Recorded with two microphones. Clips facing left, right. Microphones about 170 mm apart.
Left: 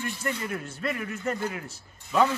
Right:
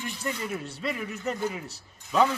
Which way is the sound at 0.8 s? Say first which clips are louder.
Left 2 dB; centre (ahead or behind).